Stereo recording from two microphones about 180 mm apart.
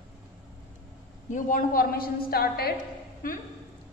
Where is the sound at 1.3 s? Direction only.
50° left (ahead or behind).